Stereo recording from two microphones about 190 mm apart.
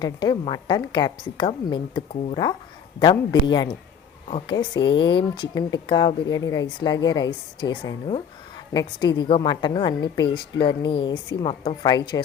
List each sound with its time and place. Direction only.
0.0 s speech: 20° left (ahead or behind)